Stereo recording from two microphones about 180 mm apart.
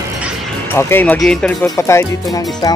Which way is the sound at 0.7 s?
10° left (ahead or behind).